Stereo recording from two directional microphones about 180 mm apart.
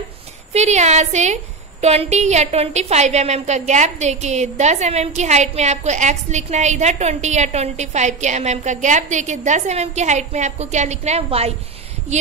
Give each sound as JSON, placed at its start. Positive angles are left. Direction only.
{"t": 0.5, "sound": "a woman's voice", "side_deg": -40}